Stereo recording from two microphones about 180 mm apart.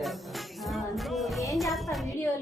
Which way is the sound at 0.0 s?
Centre (ahead or behind).